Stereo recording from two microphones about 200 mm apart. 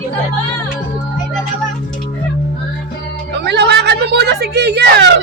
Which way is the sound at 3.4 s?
60° right (ahead or behind).